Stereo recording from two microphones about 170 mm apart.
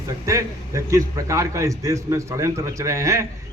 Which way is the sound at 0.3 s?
20° right (ahead or behind).